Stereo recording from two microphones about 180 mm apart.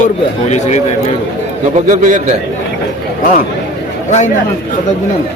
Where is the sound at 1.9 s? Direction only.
45° right (ahead or behind).